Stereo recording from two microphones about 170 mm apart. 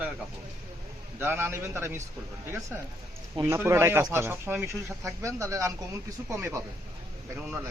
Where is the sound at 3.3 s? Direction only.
15° right (ahead or behind).